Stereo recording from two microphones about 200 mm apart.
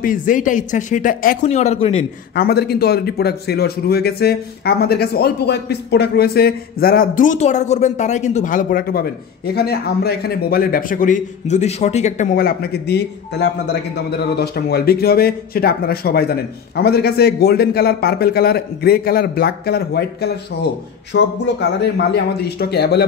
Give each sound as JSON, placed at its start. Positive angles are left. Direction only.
{"t": 0.0, "sound": "speech", "side_deg": 40}
{"t": 2.3, "sound": "a man's voice", "side_deg": 50}
{"t": 12.4, "sound": "a man's voice", "side_deg": 50}